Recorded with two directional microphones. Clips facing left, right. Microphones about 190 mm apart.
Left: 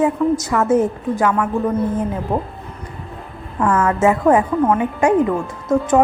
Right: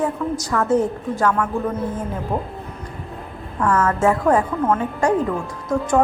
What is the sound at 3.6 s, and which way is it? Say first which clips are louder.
A woman's voice: left 2 dB; 10° left (ahead or behind).